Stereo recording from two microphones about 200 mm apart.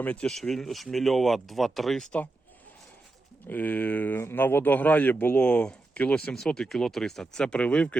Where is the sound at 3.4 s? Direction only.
10° left (ahead or behind).